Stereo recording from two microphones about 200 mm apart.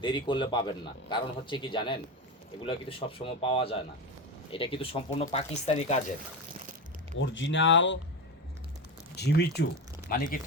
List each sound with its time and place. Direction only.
0.0 s speech: 25° left (ahead or behind)
7.2 s speech: 65° left (ahead or behind)
9.1 s speech: 55° left (ahead or behind)
10.1 s speech: 45° left (ahead or behind)